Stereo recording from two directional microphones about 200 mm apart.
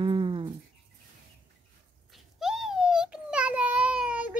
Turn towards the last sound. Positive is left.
turn(degrees=-5)  # may be behind; listen again after turning